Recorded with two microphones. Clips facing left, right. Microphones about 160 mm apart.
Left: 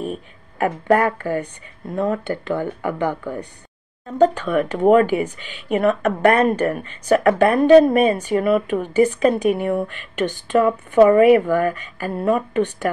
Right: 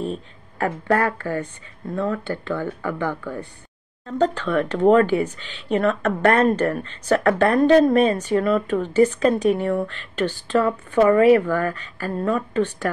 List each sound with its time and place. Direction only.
0.0 s speech: 15° left (ahead or behind)